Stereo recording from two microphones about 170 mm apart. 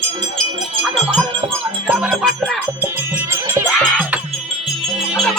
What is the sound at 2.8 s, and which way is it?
Music, 10° right (ahead or behind).